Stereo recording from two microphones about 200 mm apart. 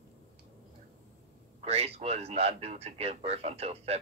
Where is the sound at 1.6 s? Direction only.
30° right (ahead or behind).